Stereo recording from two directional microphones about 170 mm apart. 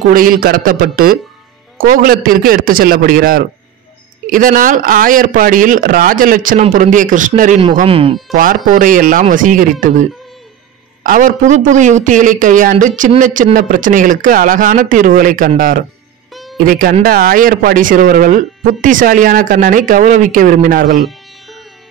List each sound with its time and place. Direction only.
0.1 s a man's voice: 55° right (ahead or behind)
7.8 s speech: 35° right (ahead or behind)
8.3 s speech: 50° right (ahead or behind)
11.1 s a man's voice: 50° right (ahead or behind)